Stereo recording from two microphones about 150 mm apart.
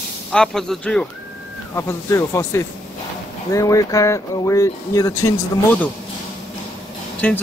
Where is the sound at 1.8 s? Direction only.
20° left (ahead or behind).